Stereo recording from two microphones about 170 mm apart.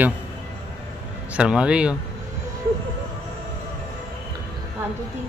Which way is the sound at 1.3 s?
5° right (ahead or behind).